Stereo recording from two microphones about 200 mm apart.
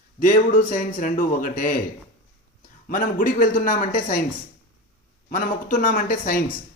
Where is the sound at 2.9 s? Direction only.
40° left (ahead or behind).